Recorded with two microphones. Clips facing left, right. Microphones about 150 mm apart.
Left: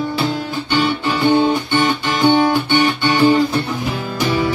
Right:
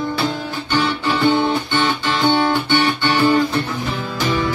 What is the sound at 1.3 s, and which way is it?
Guitar, 15° left (ahead or behind).